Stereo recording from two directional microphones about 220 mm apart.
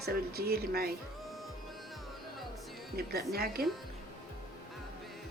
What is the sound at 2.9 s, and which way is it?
Speech, 45° right (ahead or behind).